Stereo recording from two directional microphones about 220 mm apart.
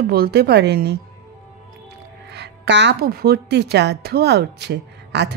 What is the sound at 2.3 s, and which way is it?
Speech, 50° right (ahead or behind).